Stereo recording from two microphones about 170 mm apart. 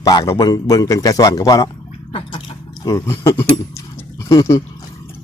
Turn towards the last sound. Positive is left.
turn(degrees=20)  # may be behind; listen again after turning